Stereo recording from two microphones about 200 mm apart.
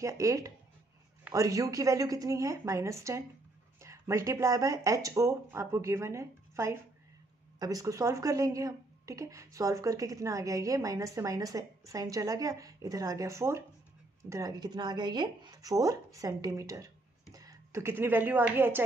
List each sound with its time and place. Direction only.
0.0 s speech: 15° right (ahead or behind)